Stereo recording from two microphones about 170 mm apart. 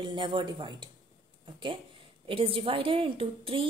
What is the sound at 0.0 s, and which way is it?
A woman's voice, 30° right (ahead or behind).